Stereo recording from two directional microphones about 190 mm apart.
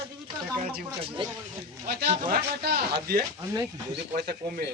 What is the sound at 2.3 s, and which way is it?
Speech, 55° right (ahead or behind).